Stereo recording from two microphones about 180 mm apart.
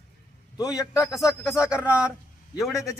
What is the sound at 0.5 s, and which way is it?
Speech, 20° left (ahead or behind).